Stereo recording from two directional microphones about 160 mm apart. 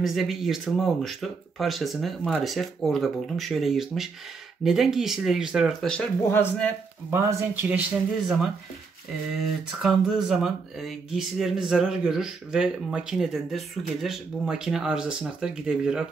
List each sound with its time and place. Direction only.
0.0 s speech: centre (ahead or behind)
5.9 s speech: 10° left (ahead or behind)
7.1 s speech: 15° right (ahead or behind)
9.7 s speech: 5° right (ahead or behind)